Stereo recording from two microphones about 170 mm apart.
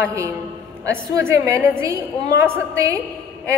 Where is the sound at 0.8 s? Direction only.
15° right (ahead or behind).